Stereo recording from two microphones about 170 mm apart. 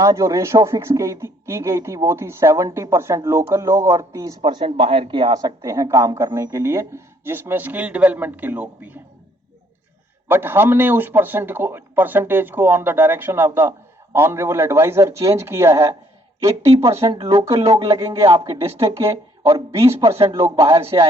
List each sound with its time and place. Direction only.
0.0 s a man's voice: 20° right (ahead or behind)
4.4 s a man's voice: 35° right (ahead or behind); by 9.0 s 10° right (ahead or behind)
10.2 s a man's voice: 15° right (ahead or behind)